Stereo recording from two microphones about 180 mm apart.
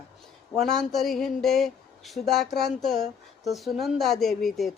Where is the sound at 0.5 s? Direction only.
Centre (ahead or behind).